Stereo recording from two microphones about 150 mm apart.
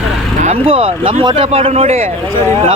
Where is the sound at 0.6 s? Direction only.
35° right (ahead or behind).